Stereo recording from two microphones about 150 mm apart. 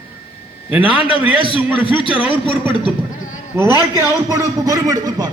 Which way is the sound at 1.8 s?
35° left (ahead or behind).